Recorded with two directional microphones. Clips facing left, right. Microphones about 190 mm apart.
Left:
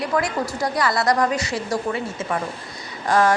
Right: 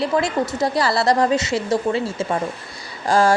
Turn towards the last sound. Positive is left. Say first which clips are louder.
# right 2 dB
turn(degrees=-30)  # may be behind; listen again after turning